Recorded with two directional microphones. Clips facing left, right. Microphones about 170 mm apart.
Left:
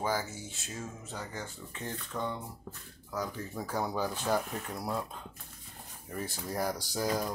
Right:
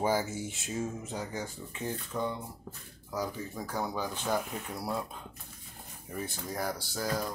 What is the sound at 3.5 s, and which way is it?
Speech, 5° left (ahead or behind).